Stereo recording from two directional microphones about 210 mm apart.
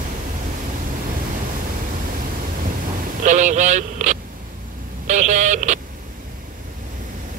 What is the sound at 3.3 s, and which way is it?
Vehicle, 35° right (ahead or behind).